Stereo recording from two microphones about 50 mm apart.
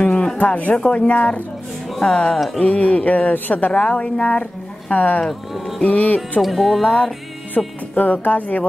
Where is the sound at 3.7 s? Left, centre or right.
Left.